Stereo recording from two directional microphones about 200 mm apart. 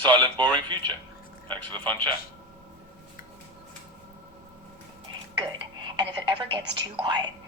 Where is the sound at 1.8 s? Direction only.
10° left (ahead or behind).